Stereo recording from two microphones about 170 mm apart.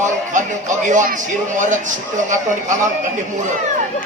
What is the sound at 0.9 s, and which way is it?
A man's voice, 50° right (ahead or behind).